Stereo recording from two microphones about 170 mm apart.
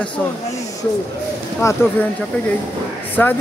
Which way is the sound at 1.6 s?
15° left (ahead or behind).